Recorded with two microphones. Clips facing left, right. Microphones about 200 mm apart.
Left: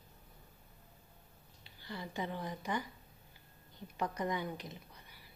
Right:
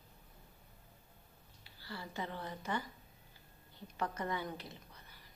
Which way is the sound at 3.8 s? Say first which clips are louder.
Left 2 dB; 15° left (ahead or behind).